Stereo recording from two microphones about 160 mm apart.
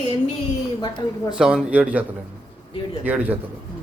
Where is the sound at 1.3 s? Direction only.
5° right (ahead or behind).